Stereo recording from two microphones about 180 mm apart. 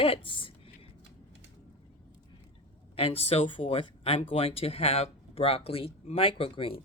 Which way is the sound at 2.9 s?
30° left (ahead or behind).